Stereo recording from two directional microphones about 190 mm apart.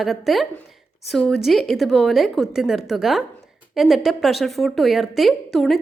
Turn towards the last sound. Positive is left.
turn(degrees=0)  # may be behind; listen again after turning